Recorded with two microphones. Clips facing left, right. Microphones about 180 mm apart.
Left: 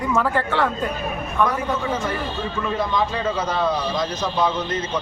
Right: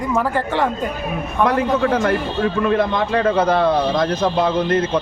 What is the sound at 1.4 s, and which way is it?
A man's voice, 65° right (ahead or behind).